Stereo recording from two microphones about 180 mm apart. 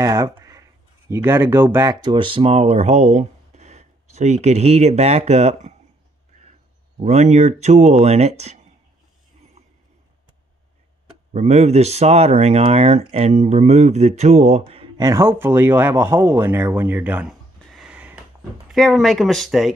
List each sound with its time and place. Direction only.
0.0 s speech: 15° right (ahead or behind); by 5.8 s 40° right (ahead or behind)
7.0 s speech: 40° right (ahead or behind)
11.3 s speech: 40° right (ahead or behind)
15.0 s speech: 20° right (ahead or behind); by 19.7 s centre (ahead or behind)